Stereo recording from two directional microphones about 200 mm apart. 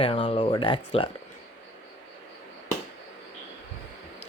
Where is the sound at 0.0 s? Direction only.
25° left (ahead or behind).